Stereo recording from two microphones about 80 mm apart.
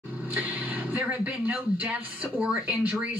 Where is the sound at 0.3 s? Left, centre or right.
Centre.